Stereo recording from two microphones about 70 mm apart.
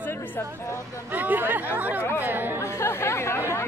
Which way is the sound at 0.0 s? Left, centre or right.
Left.